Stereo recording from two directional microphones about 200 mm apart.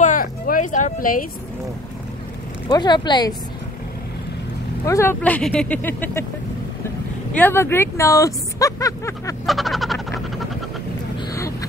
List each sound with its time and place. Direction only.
0.0 s a sound: 45° left (ahead or behind)
2.7 s speech: 20° left (ahead or behind)
4.8 s speech: 15° left (ahead or behind)
7.3 s speech: 10° left (ahead or behind)
9.5 s frog: centre (ahead or behind)
11.1 s vehicle: 15° left (ahead or behind)